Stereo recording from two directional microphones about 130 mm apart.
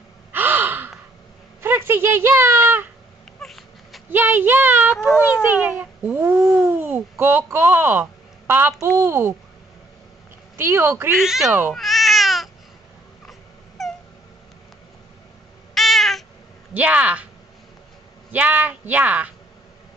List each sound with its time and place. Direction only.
0.3 s gasp: 15° right (ahead or behind)
1.6 s a sound: 20° right (ahead or behind)
3.3 s cat: centre (ahead or behind)
4.1 s a woman's voice: 15° right (ahead or behind)
10.6 s a woman's voice: 20° right (ahead or behind)
11.1 s speech: 5° right (ahead or behind)
11.7 s cat: centre (ahead or behind)
13.3 s dog: centre (ahead or behind)
15.7 s cat: centre (ahead or behind)
16.7 s speech: 10° right (ahead or behind)
18.3 s speech: 10° right (ahead or behind)